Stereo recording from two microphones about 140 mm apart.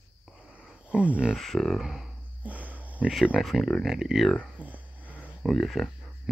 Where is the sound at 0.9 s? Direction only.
10° right (ahead or behind).